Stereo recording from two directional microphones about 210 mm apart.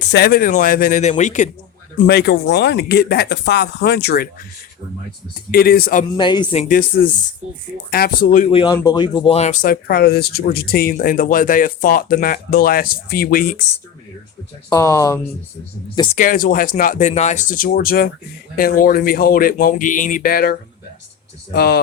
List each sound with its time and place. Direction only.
0.1 s speech: 45° left (ahead or behind)
2.0 s speech: 50° left (ahead or behind)
5.5 s speech: 45° left (ahead or behind)
6.1 s speech: 20° left (ahead or behind)
6.7 s speech: 45° left (ahead or behind)
8.4 s speech: 25° left (ahead or behind); by 13.6 s 40° left (ahead or behind)
14.7 s speech: 15° left (ahead or behind)
16.1 s speech: 40° left (ahead or behind)